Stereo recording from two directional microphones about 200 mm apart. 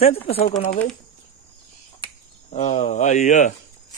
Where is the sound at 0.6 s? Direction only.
45° left (ahead or behind).